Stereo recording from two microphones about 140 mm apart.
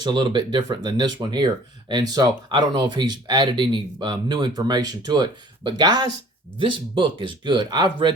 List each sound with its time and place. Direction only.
0.0 s speech: 35° right (ahead or behind)